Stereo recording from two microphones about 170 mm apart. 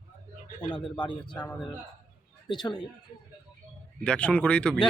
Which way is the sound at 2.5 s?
25° left (ahead or behind).